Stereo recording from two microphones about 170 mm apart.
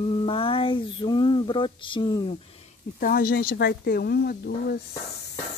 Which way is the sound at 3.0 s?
60° left (ahead or behind).